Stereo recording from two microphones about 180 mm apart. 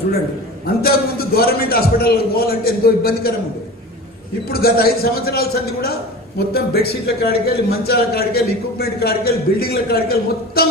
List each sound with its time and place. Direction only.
0.8 s speech: 60° left (ahead or behind)
4.5 s speech: 60° left (ahead or behind)